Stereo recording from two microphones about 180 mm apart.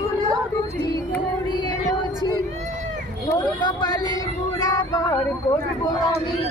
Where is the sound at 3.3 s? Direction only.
25° left (ahead or behind).